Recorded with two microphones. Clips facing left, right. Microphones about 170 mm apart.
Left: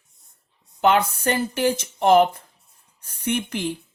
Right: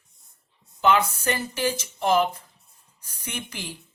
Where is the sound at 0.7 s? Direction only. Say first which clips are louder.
Left 2 dB; 60° left (ahead or behind).